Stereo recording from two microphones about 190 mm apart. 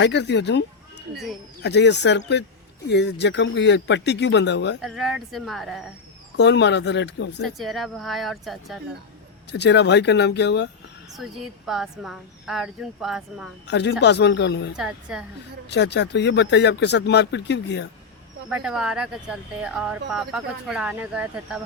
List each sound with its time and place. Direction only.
0.0 s speech: 65° left (ahead or behind)
4.8 s speech: centre (ahead or behind)
6.3 s speech: 65° left (ahead or behind)
7.4 s speech: centre (ahead or behind)
9.5 s speech: 65° left (ahead or behind)
11.1 s speech: centre (ahead or behind)
13.7 s speech: 65° left (ahead or behind)
14.8 s speech: 5° right (ahead or behind)
15.7 s speech: 65° left (ahead or behind)
18.4 s speech: 5° right (ahead or behind)